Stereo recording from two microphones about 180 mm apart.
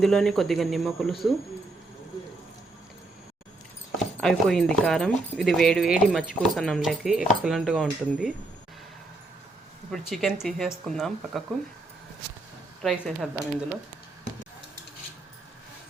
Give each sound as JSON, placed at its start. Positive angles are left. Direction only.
{"t": 0.0, "sound": "speech", "side_deg": 0}
{"t": 4.2, "sound": "speech", "side_deg": 5}
{"t": 10.1, "sound": "speech", "side_deg": 0}
{"t": 12.8, "sound": "speech", "side_deg": 0}